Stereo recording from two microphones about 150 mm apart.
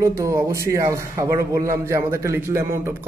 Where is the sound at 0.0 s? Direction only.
20° right (ahead or behind).